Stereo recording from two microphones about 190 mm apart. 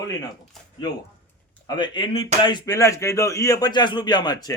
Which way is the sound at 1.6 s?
25° left (ahead or behind).